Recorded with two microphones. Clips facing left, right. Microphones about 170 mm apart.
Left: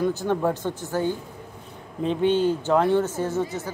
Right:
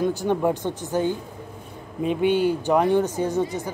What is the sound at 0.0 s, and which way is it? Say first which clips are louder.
A woman's voice: right 1 dB; 15° right (ahead or behind).